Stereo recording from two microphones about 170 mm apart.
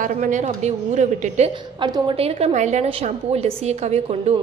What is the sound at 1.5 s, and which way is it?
A woman's voice, 30° right (ahead or behind).